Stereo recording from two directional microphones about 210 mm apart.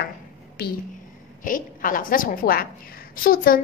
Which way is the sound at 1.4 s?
40° left (ahead or behind).